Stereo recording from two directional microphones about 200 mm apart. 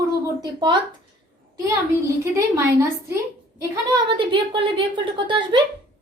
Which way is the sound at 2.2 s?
15° right (ahead or behind).